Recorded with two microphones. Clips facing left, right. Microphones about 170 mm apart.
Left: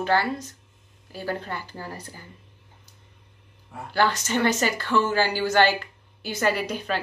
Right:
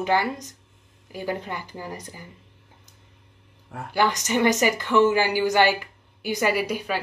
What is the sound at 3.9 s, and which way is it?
Speech, 15° right (ahead or behind).